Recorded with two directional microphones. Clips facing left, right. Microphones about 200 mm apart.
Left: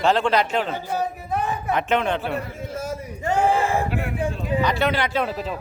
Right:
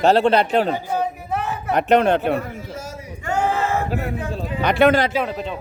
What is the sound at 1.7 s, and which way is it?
Speech, 40° right (ahead or behind).